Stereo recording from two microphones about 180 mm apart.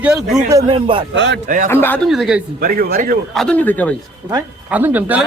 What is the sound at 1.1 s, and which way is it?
Speech, 90° right.